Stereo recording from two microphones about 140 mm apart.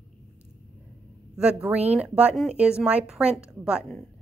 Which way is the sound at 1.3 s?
10° right (ahead or behind).